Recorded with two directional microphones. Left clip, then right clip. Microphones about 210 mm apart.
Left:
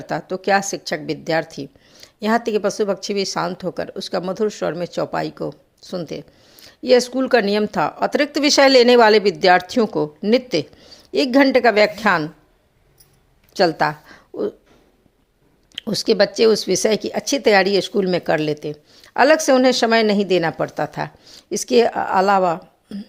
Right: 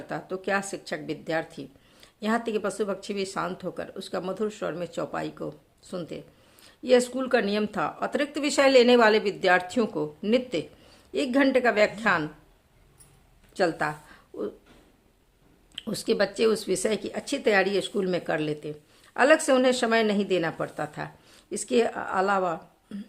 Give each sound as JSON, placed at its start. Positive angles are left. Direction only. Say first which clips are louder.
{"t": 0.1, "sound": "a woman's voice", "louder": "left 10 dB", "side_deg": 35}
{"t": 13.6, "sound": "speech", "louder": "left 9 dB", "side_deg": 35}
{"t": 15.7, "sound": "a woman's voice", "louder": "left 9 dB", "side_deg": 30}